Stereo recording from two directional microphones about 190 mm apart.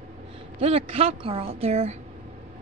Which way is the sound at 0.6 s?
30° right (ahead or behind).